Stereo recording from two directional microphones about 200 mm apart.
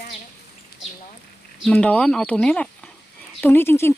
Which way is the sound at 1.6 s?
5° left (ahead or behind).